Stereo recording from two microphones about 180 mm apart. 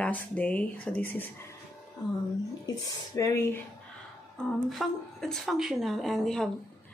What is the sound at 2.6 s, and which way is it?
Speech, 20° left (ahead or behind).